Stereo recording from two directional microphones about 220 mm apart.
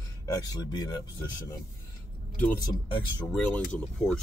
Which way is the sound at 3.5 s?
5° left (ahead or behind).